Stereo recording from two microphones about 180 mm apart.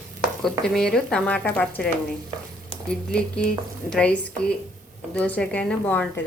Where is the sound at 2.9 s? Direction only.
5° left (ahead or behind).